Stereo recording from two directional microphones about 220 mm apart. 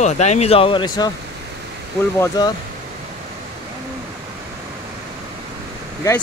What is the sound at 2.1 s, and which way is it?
Speech, 20° left (ahead or behind).